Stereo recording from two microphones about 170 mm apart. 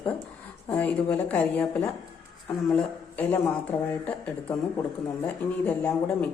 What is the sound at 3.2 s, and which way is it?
A woman's voice, 10° left (ahead or behind).